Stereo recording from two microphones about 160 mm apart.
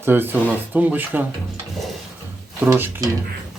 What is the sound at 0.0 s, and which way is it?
Speech, 15° right (ahead or behind).